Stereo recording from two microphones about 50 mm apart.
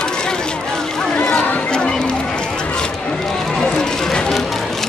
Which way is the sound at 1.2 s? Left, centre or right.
Centre.